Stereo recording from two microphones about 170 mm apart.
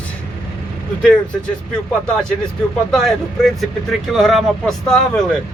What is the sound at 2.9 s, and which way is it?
Speech, centre (ahead or behind).